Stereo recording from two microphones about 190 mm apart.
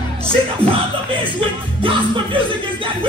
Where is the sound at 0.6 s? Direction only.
25° right (ahead or behind).